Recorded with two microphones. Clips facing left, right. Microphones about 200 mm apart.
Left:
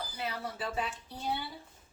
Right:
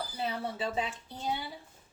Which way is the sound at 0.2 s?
25° right (ahead or behind).